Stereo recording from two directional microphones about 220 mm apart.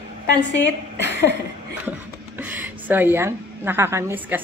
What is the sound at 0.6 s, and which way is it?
Speech, 50° left (ahead or behind).